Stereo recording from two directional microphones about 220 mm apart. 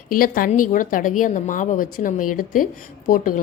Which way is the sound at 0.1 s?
40° left (ahead or behind).